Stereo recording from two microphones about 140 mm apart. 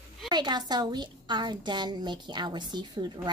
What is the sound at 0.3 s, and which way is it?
A woman's voice, 30° right (ahead or behind).